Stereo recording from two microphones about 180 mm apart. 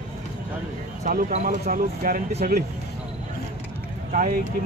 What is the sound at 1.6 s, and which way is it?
Speech, 50° right (ahead or behind).